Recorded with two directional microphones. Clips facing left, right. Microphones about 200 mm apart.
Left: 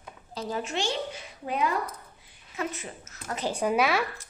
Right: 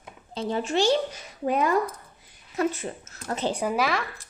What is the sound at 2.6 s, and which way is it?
Speech, 35° right (ahead or behind).